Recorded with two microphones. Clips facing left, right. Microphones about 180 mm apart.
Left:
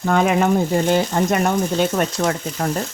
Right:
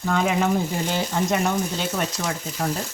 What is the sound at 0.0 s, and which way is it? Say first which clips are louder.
Speech: left 5 dB; 55° left (ahead or behind).